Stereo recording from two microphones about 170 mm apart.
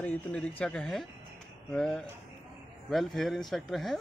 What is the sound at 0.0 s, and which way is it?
Speech, 5° left (ahead or behind).